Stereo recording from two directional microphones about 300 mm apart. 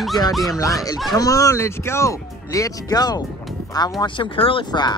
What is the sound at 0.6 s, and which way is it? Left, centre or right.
Speech, centre.